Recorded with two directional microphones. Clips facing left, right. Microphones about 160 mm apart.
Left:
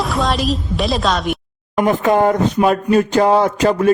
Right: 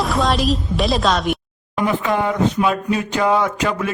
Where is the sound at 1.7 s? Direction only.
45° left (ahead or behind).